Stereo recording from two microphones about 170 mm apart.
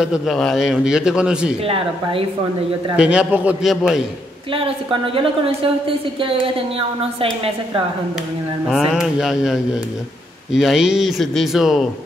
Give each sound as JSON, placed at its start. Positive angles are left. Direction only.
{"t": 0.0, "sound": "a man's voice", "side_deg": 0}
{"t": 3.0, "sound": "a man's voice", "side_deg": -5}
{"t": 4.5, "sound": "a woman's voice", "side_deg": -30}
{"t": 8.6, "sound": "a man's voice", "side_deg": 0}